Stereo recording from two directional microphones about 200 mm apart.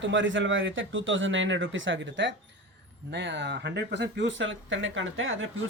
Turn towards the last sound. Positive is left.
turn(degrees=-75)  # may be behind; listen again after turning